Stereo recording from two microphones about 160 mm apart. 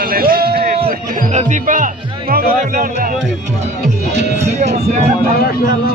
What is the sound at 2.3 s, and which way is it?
Music, 65° right (ahead or behind).